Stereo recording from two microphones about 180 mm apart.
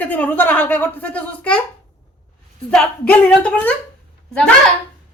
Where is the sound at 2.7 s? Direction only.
5° left (ahead or behind).